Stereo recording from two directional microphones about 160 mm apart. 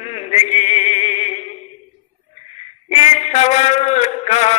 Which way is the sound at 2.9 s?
40° left (ahead or behind).